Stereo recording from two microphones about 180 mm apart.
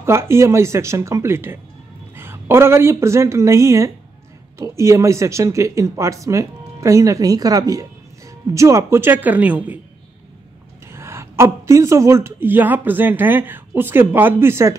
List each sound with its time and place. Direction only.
0.0 s a woman's voice: 15° right (ahead or behind)
10.9 s a woman's voice: 15° right (ahead or behind)